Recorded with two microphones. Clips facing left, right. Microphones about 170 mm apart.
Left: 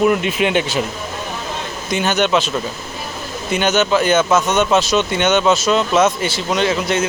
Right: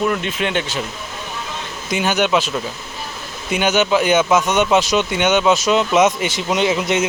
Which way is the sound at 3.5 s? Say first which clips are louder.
Even; 10° right (ahead or behind).